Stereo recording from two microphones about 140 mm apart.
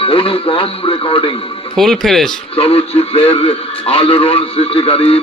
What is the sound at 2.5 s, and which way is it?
A man's voice, 45° left (ahead or behind).